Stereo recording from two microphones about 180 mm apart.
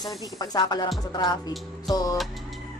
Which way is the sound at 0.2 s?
20° left (ahead or behind).